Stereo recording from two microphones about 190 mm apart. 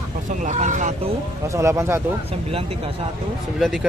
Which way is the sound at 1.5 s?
15° right (ahead or behind).